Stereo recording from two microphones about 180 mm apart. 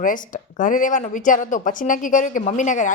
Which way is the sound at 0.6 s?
45° left (ahead or behind).